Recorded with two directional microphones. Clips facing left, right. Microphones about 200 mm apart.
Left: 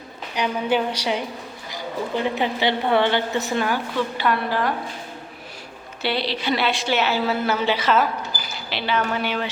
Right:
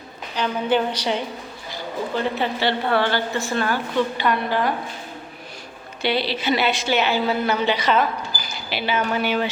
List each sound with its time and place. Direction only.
0.3 s a woman's voice: 10° left (ahead or behind)
3.9 s a woman's voice: centre (ahead or behind)
6.0 s a woman's voice: centre (ahead or behind)